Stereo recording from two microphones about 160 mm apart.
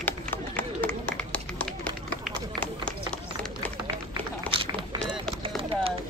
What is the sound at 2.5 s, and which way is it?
Run, 5° left (ahead or behind).